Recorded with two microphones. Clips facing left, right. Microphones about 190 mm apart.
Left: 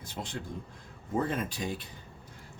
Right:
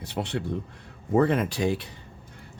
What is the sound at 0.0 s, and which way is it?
Speech, 70° right (ahead or behind).